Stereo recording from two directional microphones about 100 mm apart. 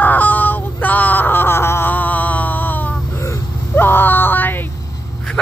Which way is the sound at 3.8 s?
20° left (ahead or behind).